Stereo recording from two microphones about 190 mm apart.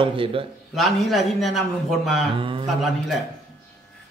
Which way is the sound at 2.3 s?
25° right (ahead or behind).